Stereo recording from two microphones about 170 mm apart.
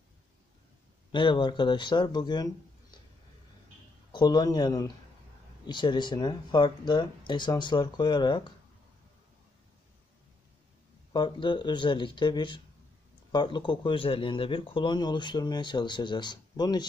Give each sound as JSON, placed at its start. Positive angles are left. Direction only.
{"t": 1.1, "sound": "speech", "side_deg": 30}
{"t": 4.1, "sound": "speech", "side_deg": 25}
{"t": 11.1, "sound": "speech", "side_deg": 30}